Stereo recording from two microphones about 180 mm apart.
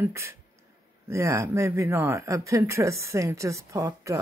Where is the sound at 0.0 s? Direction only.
15° right (ahead or behind).